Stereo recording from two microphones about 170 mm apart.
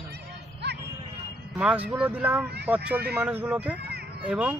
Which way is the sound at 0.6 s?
75° right (ahead or behind).